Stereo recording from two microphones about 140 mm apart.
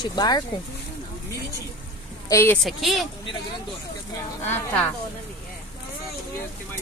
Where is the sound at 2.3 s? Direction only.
20° left (ahead or behind).